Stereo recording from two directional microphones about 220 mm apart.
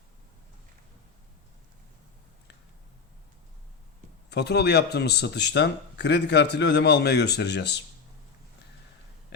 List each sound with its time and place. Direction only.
4.3 s a man's voice: 50° left (ahead or behind)